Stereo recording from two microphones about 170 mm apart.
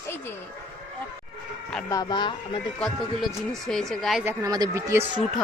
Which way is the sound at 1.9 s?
25° left (ahead or behind).